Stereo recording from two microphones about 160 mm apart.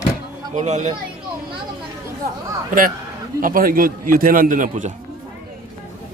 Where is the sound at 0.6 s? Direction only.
45° right (ahead or behind).